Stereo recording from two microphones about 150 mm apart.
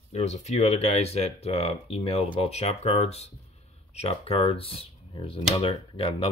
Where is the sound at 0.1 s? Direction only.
45° left (ahead or behind).